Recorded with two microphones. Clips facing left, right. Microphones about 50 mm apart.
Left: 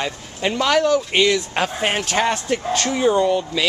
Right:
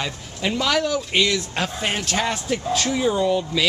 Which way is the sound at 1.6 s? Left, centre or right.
Centre.